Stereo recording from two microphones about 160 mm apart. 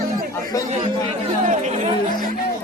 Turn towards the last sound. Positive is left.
turn(degrees=-45)  # may be behind; listen again after turning